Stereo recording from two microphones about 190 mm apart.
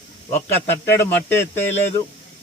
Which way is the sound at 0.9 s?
10° left (ahead or behind).